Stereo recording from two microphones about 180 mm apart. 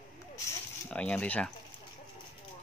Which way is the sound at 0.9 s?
5° left (ahead or behind).